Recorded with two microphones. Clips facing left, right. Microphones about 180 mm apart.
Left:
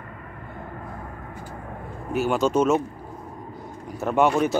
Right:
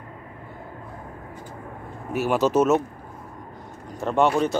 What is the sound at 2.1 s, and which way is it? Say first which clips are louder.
Speech: right 1 dB; 5° right (ahead or behind).